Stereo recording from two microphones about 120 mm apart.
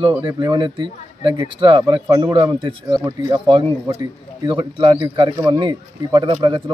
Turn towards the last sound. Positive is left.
turn(degrees=-40)  # may be behind; listen again after turning